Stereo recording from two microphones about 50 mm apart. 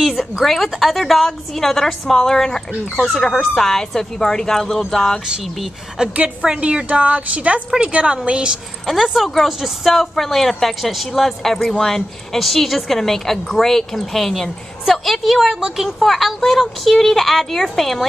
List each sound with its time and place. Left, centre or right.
0.0 s a woman's voice: centre
6.1 s a woman's voice: right
8.8 s a woman's voice: centre
15.4 s a woman's voice: centre